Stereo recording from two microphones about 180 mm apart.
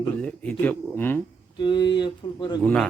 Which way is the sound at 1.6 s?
25° left (ahead or behind).